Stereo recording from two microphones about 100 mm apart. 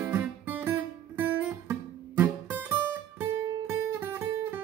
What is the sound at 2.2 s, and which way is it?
Music, 20° right (ahead or behind).